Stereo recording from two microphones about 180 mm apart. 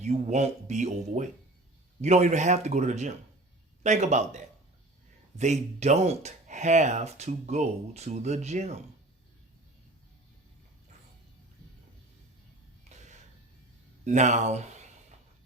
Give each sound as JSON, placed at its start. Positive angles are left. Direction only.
{"t": 0.0, "sound": "speech", "side_deg": -40}
{"t": 12.9, "sound": "a sound", "side_deg": -40}
{"t": 14.0, "sound": "speech", "side_deg": -40}